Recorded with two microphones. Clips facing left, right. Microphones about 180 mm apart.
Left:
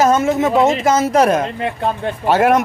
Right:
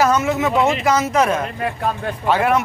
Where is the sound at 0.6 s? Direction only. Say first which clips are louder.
Left 3 dB; 45° left (ahead or behind).